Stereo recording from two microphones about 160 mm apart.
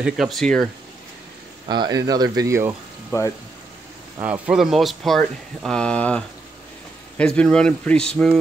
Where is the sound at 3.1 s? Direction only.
20° left (ahead or behind).